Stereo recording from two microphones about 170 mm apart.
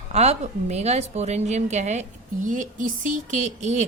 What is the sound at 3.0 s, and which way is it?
Speech, 50° right (ahead or behind).